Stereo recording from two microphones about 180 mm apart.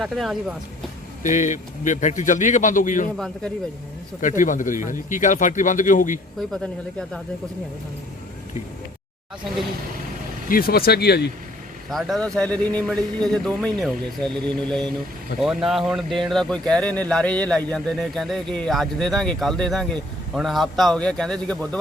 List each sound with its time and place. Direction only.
0.0 s speech: centre (ahead or behind)
1.2 s a man's voice: 45° left (ahead or behind)
3.2 s speech: centre (ahead or behind)
4.2 s a man's voice: 45° left (ahead or behind)
10.5 s speech: 55° left (ahead or behind)
11.9 s speech: centre (ahead or behind)